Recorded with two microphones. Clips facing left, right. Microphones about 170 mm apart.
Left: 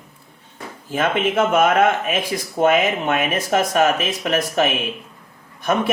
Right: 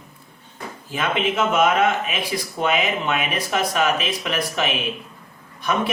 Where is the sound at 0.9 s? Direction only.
50° left (ahead or behind).